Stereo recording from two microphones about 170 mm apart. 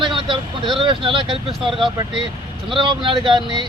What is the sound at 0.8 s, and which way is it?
Speech, 30° right (ahead or behind).